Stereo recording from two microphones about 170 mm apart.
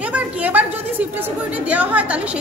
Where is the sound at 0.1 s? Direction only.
10° right (ahead or behind).